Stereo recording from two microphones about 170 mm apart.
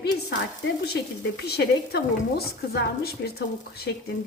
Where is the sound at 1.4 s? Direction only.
70° left (ahead or behind).